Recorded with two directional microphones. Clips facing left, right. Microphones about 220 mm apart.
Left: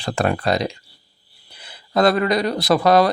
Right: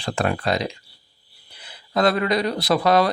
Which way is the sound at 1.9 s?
40° left (ahead or behind).